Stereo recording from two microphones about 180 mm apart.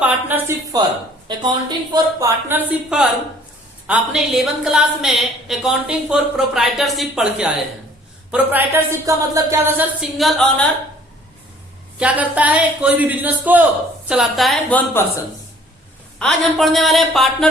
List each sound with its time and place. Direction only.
0.0 s a woman's voice: 10° right (ahead or behind)
10.2 s a woman's voice: centre (ahead or behind)
11.9 s a woman's voice: 5° right (ahead or behind)